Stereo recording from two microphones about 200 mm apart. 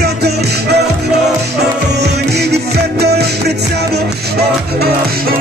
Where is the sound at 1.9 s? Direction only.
55° right (ahead or behind).